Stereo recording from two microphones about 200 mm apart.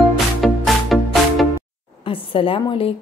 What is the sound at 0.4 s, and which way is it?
Music, centre (ahead or behind).